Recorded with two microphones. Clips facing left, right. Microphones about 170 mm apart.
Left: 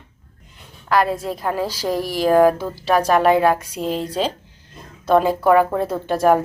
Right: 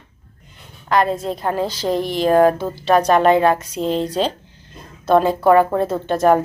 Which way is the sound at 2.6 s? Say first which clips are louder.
Right 2 dB; 20° right (ahead or behind).